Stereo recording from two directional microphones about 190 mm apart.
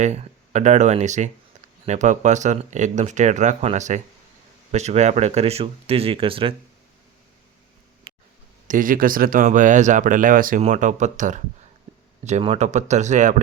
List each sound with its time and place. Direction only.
0.0 s speech: 35° right (ahead or behind)
8.1 s a sound: 30° right (ahead or behind)
8.6 s speech: 45° right (ahead or behind)